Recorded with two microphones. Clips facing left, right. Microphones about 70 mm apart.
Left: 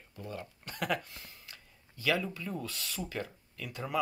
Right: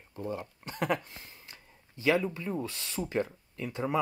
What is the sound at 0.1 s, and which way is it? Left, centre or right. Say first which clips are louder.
Speech: right 6 dB; right.